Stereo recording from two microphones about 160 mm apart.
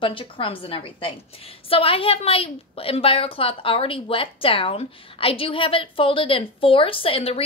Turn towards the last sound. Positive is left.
turn(degrees=35)  # may be behind; listen again after turning